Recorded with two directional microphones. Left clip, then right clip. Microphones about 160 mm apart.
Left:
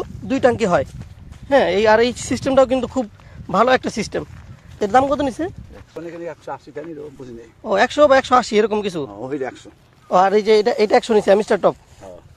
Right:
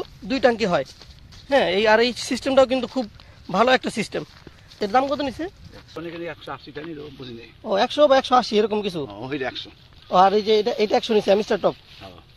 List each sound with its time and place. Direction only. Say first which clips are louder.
0.3 s speech: left 3 dB; 25° left (ahead or behind)
5.9 s speech: left 2 dB; 60° right (ahead or behind)
7.6 s speech: left 4 dB; 20° left (ahead or behind)
9.1 s speech: left 2 dB; 15° right (ahead or behind)
10.1 s speech: left 2 dB; 25° left (ahead or behind)
11.1 s speech: left 4 dB; 15° left (ahead or behind)